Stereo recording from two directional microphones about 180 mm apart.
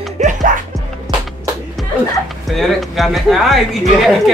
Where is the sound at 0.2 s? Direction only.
45° right (ahead or behind).